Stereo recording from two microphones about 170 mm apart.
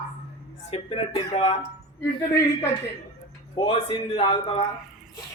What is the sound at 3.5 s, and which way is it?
A man's voice, 30° left (ahead or behind).